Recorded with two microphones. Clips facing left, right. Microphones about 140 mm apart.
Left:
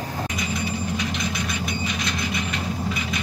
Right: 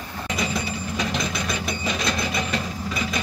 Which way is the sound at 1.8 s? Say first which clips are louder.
Right 2 dB; 35° right (ahead or behind).